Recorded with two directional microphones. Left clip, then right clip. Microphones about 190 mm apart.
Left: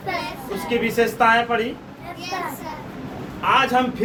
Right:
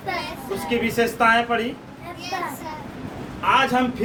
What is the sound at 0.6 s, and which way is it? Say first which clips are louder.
A man's voice: left 2 dB; 15° right (ahead or behind).